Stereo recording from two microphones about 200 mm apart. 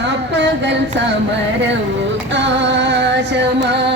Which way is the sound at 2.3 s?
65° right (ahead or behind).